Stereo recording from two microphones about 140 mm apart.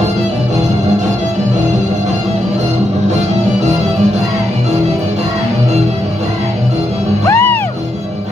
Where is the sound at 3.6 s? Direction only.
55° right (ahead or behind).